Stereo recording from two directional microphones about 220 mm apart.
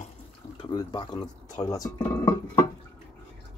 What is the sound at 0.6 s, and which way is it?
Speech, 20° left (ahead or behind).